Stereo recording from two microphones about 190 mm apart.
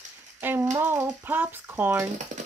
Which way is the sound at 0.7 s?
15° right (ahead or behind).